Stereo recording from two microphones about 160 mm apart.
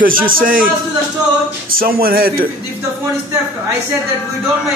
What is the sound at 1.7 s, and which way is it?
Music, 65° right (ahead or behind).